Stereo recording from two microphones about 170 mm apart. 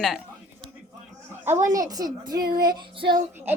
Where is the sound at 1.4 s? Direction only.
15° right (ahead or behind).